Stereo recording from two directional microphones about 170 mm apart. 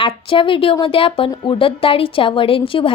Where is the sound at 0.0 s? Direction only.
30° left (ahead or behind).